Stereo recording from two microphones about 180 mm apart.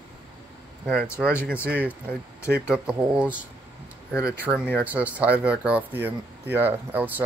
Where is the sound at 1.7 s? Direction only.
10° right (ahead or behind).